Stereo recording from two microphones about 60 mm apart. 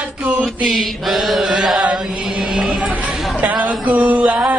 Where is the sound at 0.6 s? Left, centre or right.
Centre.